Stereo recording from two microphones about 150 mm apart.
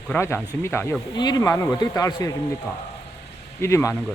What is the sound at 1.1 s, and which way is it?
Speech, 25° left (ahead or behind).